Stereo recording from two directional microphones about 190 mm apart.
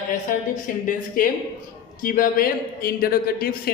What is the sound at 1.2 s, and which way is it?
A man's voice, 45° left (ahead or behind).